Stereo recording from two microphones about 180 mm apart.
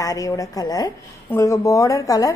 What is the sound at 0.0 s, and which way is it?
A woman's voice, 20° left (ahead or behind).